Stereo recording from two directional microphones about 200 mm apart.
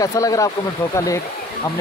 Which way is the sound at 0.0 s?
15° left (ahead or behind).